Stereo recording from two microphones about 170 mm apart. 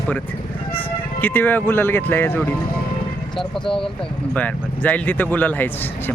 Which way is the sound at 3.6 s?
30° left (ahead or behind).